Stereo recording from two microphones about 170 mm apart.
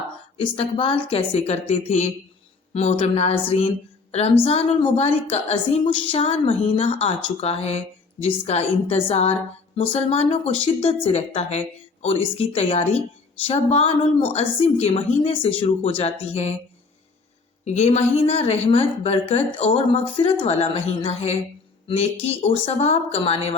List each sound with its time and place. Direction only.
0.3 s a woman's voice: 35° left (ahead or behind)
4.4 s a woman's voice: 35° left (ahead or behind)
17.7 s a woman's voice: 40° left (ahead or behind)